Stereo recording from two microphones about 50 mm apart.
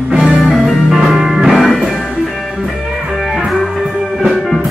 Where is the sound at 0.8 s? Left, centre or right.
Centre.